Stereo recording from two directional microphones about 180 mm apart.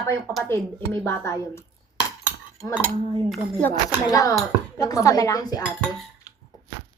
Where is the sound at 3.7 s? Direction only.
20° left (ahead or behind).